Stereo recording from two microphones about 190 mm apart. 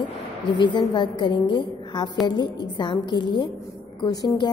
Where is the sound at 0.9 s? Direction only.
25° left (ahead or behind).